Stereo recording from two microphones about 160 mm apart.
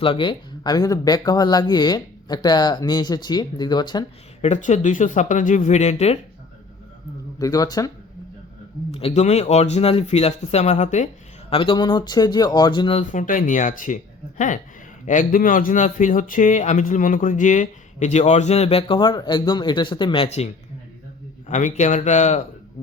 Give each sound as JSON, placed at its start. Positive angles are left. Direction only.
{"t": 0.0, "sound": "speech", "side_deg": 30}
{"t": 4.4, "sound": "speech", "side_deg": 45}
{"t": 7.3, "sound": "speech", "side_deg": 20}
{"t": 8.9, "sound": "speech", "side_deg": 40}
{"t": 11.4, "sound": "speech", "side_deg": 35}
{"t": 13.1, "sound": "speech", "side_deg": 55}
{"t": 21.5, "sound": "speech", "side_deg": 50}